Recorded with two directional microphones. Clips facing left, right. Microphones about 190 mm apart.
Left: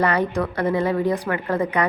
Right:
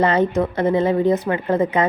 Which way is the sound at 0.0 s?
25° right (ahead or behind).